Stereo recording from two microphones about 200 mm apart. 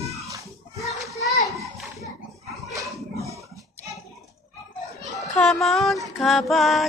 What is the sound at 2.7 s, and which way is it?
Dog, 15° right (ahead or behind).